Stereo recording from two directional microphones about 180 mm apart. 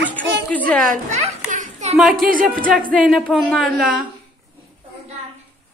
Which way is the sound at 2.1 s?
50° right (ahead or behind).